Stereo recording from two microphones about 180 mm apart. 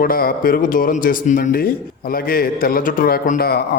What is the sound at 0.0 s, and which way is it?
A man's voice, 55° left (ahead or behind).